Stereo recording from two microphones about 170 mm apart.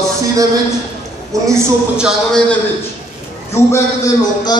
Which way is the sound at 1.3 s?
20° right (ahead or behind).